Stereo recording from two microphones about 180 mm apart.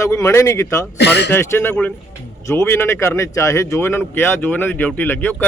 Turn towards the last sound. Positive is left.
turn(degrees=10)  # may be behind; listen again after turning